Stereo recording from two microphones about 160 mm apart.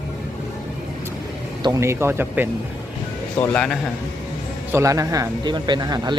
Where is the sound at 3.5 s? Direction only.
5° left (ahead or behind).